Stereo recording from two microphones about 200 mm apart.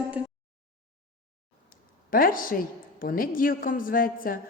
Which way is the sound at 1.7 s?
45° left (ahead or behind).